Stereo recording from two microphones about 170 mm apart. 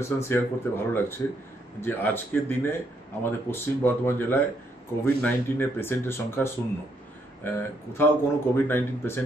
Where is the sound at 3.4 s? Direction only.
15° left (ahead or behind).